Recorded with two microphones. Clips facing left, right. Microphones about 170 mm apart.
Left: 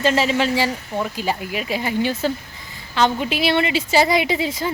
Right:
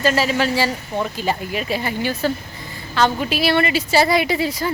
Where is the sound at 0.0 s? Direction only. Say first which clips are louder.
Even; 25° left (ahead or behind).